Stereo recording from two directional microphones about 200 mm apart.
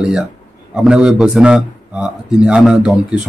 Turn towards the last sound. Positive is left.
turn(degrees=-5)  # may be behind; listen again after turning